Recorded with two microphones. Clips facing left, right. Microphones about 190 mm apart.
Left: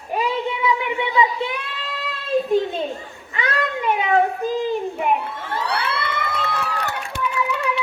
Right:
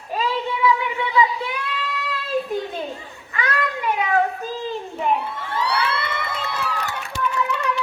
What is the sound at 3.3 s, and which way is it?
Children playing, 25° left (ahead or behind).